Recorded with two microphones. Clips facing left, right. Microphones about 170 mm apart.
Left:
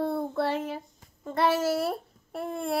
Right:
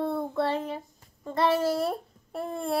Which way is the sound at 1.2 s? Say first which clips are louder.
Right 1 dB; centre (ahead or behind).